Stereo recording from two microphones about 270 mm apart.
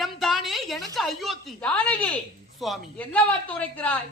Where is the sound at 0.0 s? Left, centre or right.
Centre.